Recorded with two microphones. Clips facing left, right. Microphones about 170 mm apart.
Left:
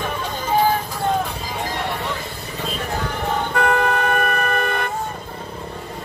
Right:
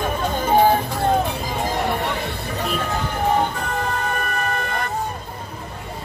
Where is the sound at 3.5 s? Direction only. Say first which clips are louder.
Left 6 dB; 65° left (ahead or behind).